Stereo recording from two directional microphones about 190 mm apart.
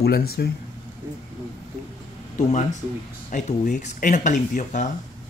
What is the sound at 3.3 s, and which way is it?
Speech, 40° left (ahead or behind).